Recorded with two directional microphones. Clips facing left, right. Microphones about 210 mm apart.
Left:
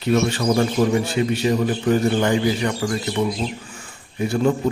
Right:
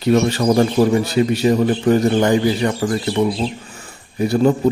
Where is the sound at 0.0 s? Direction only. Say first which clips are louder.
Right 4 dB; 40° right (ahead or behind).